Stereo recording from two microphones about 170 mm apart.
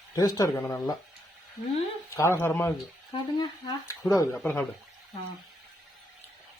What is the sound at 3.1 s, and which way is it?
Speech, 25° left (ahead or behind).